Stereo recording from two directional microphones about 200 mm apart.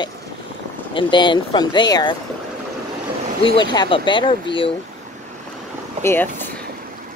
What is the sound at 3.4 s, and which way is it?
Speech, 25° left (ahead or behind).